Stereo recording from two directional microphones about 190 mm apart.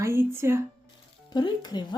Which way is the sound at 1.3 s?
20° left (ahead or behind).